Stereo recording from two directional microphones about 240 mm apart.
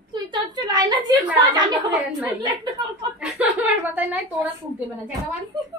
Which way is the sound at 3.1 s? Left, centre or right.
Centre.